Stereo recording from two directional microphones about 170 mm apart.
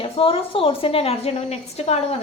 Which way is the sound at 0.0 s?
35° left (ahead or behind).